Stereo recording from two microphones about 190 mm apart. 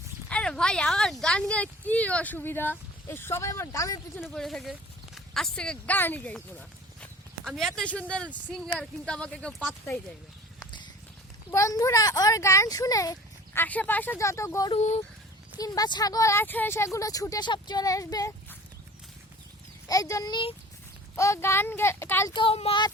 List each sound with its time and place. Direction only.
0.3 s speech: 5° left (ahead or behind)
4.2 s speech: centre (ahead or behind)
11.5 s speech: 15° left (ahead or behind)
14.7 s speech: 35° left (ahead or behind)
15.5 s speech: 20° left (ahead or behind)
19.9 s speech: 15° left (ahead or behind)
21.2 s speech: 15° left (ahead or behind)
22.3 s speech: 25° left (ahead or behind)